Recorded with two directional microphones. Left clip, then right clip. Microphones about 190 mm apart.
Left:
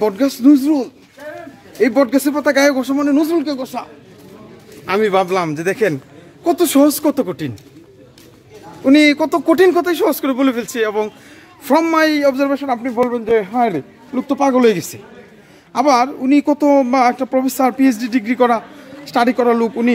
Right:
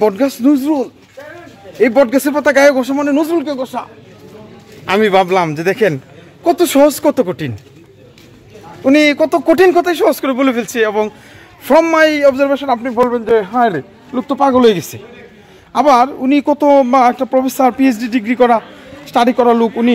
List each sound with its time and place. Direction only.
0.0 s a woman's voice: 20° right (ahead or behind)
4.8 s a woman's voice: 25° right (ahead or behind)
8.8 s a woman's voice: 15° right (ahead or behind)